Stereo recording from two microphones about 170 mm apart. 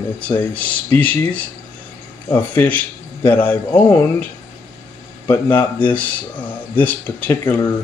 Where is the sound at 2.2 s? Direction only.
10° left (ahead or behind).